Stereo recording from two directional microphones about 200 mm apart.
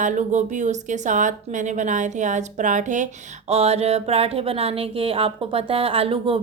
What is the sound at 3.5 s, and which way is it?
Music, 30° right (ahead or behind).